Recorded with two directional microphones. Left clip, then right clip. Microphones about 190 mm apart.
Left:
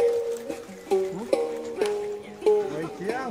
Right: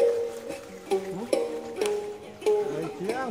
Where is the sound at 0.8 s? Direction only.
Centre (ahead or behind).